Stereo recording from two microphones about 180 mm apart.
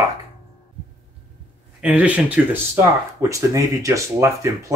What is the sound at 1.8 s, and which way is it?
Speech, 10° right (ahead or behind).